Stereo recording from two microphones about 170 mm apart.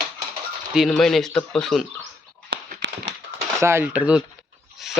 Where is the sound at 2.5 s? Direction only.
90° right.